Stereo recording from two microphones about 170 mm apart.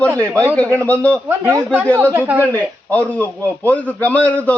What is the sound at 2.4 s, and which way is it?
A man's voice, 10° left (ahead or behind).